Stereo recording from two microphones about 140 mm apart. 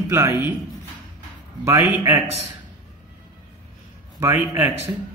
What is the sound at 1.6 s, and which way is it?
Speech, 20° right (ahead or behind).